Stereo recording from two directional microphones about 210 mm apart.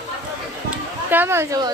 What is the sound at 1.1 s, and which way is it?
Speech, 10° right (ahead or behind).